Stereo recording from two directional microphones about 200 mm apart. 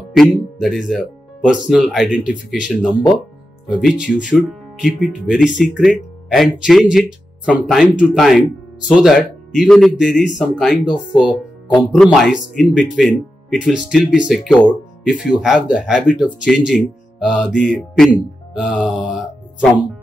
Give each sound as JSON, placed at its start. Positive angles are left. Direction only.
{"t": 0.1, "sound": "speech", "side_deg": 0}